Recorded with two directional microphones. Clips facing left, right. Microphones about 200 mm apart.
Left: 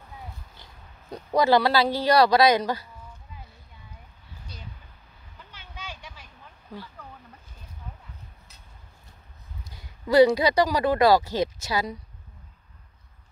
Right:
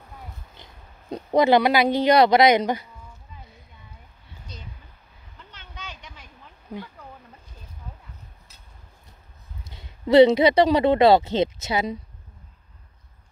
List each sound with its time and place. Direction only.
0.6 s pig: 20° right (ahead or behind)
1.1 s speech: 20° right (ahead or behind)
5.5 s a sound: 10° left (ahead or behind)
9.7 s speech: 25° right (ahead or behind)